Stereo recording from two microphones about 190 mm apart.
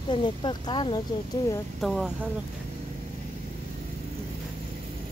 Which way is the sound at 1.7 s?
Centre (ahead or behind).